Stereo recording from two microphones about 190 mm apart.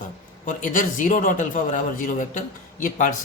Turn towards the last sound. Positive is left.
turn(degrees=45)  # may be behind; listen again after turning